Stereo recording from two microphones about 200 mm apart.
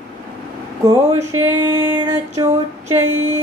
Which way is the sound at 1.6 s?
15° right (ahead or behind).